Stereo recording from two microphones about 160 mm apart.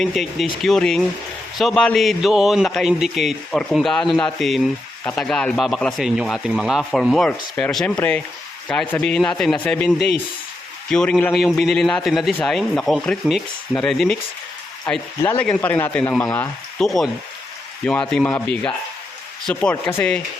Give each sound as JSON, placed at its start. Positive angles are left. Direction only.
{"t": 0.0, "sound": "a man's voice", "side_deg": 0}
{"t": 15.2, "sound": "a man's voice", "side_deg": 10}
{"t": 16.7, "sound": "a man's voice", "side_deg": 0}